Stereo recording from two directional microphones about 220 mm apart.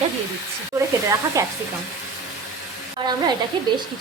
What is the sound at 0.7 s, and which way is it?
Speech, 15° right (ahead or behind).